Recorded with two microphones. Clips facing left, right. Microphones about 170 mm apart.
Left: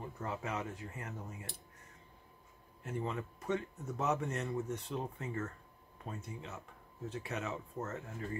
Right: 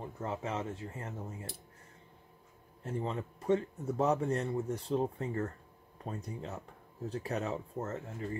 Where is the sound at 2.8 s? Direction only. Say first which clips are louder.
Right 3 dB; 30° right (ahead or behind).